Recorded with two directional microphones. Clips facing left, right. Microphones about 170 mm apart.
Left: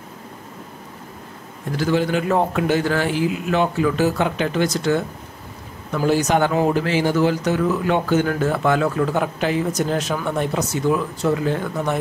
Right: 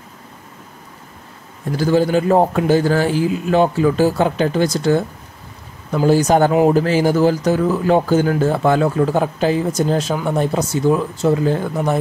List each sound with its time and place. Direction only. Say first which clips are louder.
1.8 s speech: right 4 dB; 35° right (ahead or behind)
6.0 s speech: right 5 dB; 35° right (ahead or behind)